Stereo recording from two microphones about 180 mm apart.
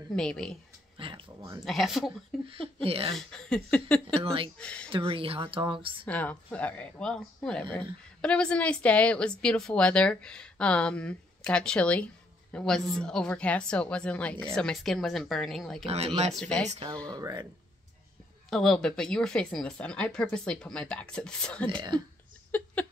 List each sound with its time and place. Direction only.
0.1 s speech: 5° left (ahead or behind)
0.9 s speech: 30° right (ahead or behind)
1.6 s speech: centre (ahead or behind)
2.4 s speech: 30° right (ahead or behind)
3.2 s speech: 5° left (ahead or behind)
4.1 s speech: 30° right (ahead or behind)
4.6 s speech: 5° left (ahead or behind)
4.8 s speech: 30° right (ahead or behind)
6.0 s speech: 10° left (ahead or behind)
15.8 s speech: 35° right (ahead or behind)
16.3 s speech: 5° left (ahead or behind)
16.6 s speech: 30° right (ahead or behind)
18.5 s speech: 5° left (ahead or behind)
22.5 s a sound: 10° left (ahead or behind)